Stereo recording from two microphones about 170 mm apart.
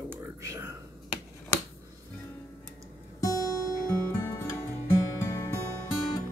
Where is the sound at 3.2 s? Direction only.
20° left (ahead or behind).